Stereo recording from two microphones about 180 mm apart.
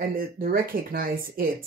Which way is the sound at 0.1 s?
55° right (ahead or behind).